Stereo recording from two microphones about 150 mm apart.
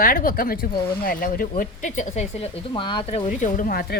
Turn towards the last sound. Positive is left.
turn(degrees=85)